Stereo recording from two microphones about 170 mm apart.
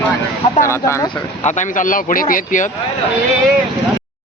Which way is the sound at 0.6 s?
15° left (ahead or behind).